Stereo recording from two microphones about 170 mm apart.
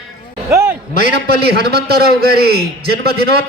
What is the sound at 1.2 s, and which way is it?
A man's voice, 65° right (ahead or behind).